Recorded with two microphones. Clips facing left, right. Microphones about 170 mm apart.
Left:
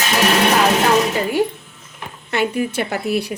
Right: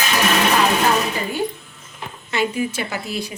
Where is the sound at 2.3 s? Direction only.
60° left (ahead or behind).